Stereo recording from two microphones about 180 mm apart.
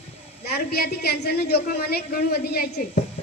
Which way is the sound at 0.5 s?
60° left (ahead or behind).